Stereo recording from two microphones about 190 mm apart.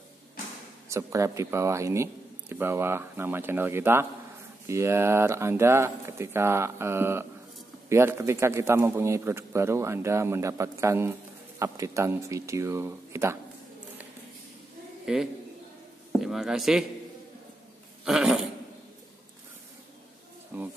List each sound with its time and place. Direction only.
0.8 s speech: 15° right (ahead or behind)
15.1 s speech: 5° right (ahead or behind)
18.0 s speech: centre (ahead or behind)
20.5 s speech: 10° right (ahead or behind)